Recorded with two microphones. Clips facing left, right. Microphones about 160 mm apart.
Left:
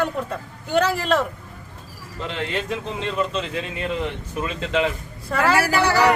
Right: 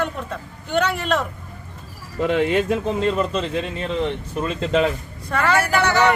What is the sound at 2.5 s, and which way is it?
Speech, 55° right (ahead or behind).